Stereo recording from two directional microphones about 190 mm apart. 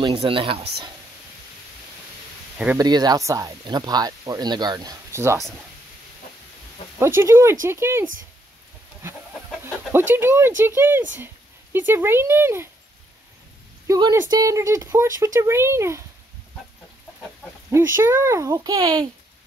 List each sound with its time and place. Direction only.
0.0 s speech: 30° right (ahead or behind)
2.8 s speech: 20° right (ahead or behind)
7.2 s speech: 15° right (ahead or behind)
9.9 s speech: 10° right (ahead or behind)
13.8 s a woman's voice: 25° right (ahead or behind)
17.6 s speech: 15° right (ahead or behind)